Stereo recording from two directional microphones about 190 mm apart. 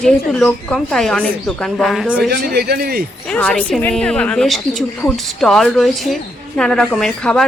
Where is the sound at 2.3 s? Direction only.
55° right (ahead or behind).